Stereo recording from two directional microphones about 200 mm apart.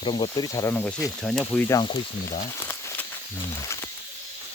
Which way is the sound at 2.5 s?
10° left (ahead or behind).